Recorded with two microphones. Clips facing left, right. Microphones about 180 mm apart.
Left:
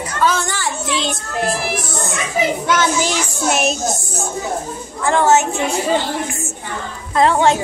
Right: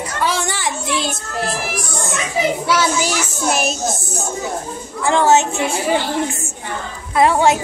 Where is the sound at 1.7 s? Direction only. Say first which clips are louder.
Left 2 dB; 25° left (ahead or behind).